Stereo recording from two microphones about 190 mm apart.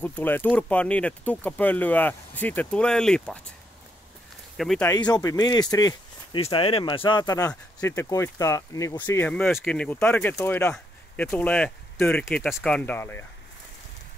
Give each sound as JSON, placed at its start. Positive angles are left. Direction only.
{"t": 0.0, "sound": "speech", "side_deg": 10}
{"t": 4.6, "sound": "speech", "side_deg": 0}
{"t": 5.1, "sound": "speech", "side_deg": 20}